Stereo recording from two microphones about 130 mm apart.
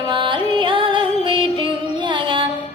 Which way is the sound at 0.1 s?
40° right (ahead or behind).